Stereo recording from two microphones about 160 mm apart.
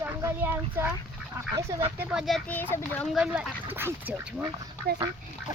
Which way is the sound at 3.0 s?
5° right (ahead or behind).